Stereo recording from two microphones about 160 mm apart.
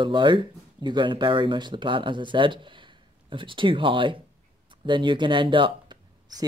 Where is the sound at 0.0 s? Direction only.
30° right (ahead or behind).